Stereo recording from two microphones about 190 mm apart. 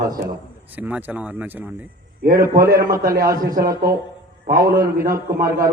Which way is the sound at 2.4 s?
50° right (ahead or behind).